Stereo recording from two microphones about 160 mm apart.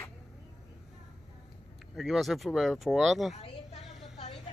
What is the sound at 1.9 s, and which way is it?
Speech, centre (ahead or behind).